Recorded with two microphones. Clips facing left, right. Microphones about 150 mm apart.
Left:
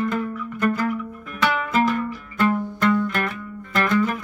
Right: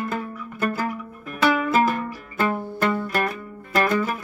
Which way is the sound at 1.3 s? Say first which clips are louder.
Right 4 dB; 40° right (ahead or behind).